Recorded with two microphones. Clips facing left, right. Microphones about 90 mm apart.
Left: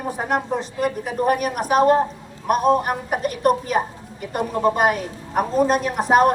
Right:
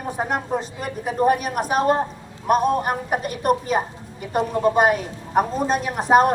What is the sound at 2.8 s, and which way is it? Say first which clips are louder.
A woman's voice: even; centre (ahead or behind).